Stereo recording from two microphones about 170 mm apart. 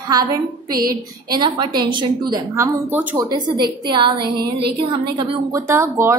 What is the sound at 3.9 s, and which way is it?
A woman's voice, 25° right (ahead or behind).